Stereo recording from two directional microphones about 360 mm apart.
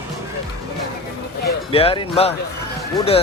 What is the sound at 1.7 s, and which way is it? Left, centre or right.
Speech, centre.